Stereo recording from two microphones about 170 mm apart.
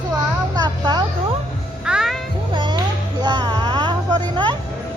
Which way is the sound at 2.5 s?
25° right (ahead or behind).